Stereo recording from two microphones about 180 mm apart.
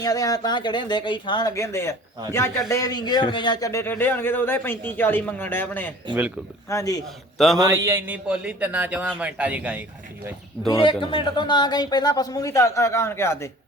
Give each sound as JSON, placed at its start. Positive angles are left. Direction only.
{"t": 0.0, "sound": "a man's voice", "side_deg": 20}
{"t": 7.3, "sound": "a man's voice", "side_deg": 0}
{"t": 7.6, "sound": "speech", "side_deg": -15}
{"t": 10.7, "sound": "a man's voice", "side_deg": 25}